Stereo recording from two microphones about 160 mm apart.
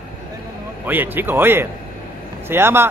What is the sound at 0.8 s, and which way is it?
Speech, 10° right (ahead or behind).